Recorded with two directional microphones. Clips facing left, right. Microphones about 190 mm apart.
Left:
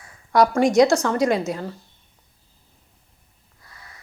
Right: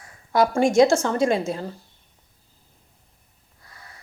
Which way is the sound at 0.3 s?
25° right (ahead or behind).